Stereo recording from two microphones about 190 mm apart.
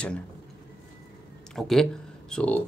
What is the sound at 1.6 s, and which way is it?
Speech, centre (ahead or behind).